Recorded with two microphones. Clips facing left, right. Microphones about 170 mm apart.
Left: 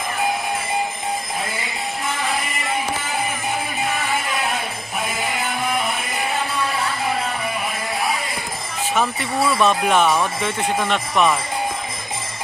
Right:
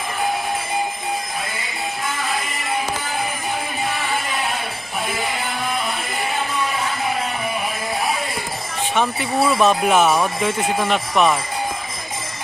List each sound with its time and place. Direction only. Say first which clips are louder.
9.0 s speech: right 2 dB; centre (ahead or behind)